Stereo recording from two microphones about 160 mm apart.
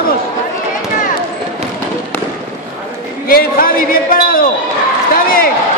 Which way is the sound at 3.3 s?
65° left (ahead or behind).